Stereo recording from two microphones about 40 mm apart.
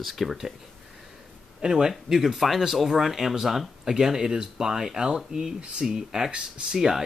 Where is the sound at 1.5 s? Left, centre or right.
Centre.